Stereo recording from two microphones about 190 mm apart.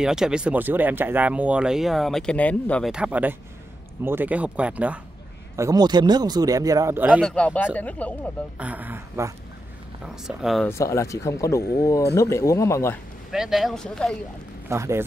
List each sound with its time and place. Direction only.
0.0 s speech: 5° right (ahead or behind)
2.9 s speech: 5° right (ahead or behind)
5.6 s speech: 20° right (ahead or behind)
7.2 s speech: 5° left (ahead or behind)
8.5 s speech: 10° right (ahead or behind)
10.0 s speech: centre (ahead or behind)
10.7 s speech: 15° left (ahead or behind)
13.3 s speech: centre (ahead or behind)
14.7 s speech: 15° right (ahead or behind)